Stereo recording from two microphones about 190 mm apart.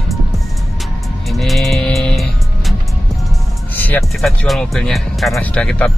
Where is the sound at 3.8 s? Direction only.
5° left (ahead or behind).